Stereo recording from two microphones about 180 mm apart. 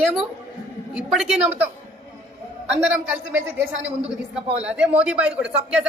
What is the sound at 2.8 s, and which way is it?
Speech, 5° right (ahead or behind).